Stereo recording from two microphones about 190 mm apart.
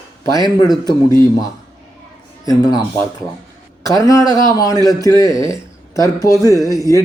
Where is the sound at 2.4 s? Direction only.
20° left (ahead or behind).